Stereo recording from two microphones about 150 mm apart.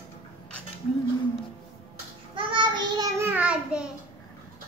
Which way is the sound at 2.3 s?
35° right (ahead or behind).